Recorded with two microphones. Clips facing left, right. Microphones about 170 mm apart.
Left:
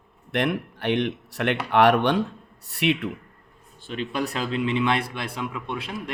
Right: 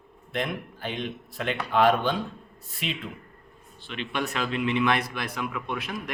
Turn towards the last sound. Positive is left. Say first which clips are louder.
# left 1 dB
turn(degrees=30)  # may be behind; listen again after turning